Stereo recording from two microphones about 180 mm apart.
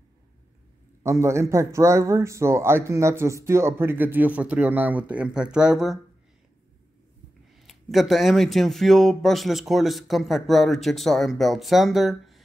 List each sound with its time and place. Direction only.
1.0 s speech: 15° right (ahead or behind)
7.5 s speech: centre (ahead or behind)